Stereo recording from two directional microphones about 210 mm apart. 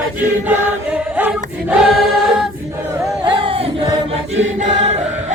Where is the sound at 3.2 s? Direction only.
25° right (ahead or behind).